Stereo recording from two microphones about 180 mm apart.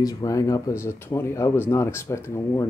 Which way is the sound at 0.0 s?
20° left (ahead or behind).